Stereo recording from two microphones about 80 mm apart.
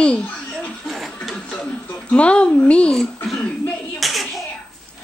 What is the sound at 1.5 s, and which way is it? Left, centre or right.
A woman's voice, centre.